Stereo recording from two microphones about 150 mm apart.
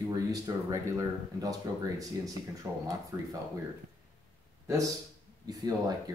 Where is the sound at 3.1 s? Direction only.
20° right (ahead or behind).